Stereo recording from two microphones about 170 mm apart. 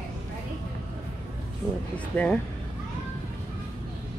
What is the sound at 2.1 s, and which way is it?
Speech, 5° left (ahead or behind).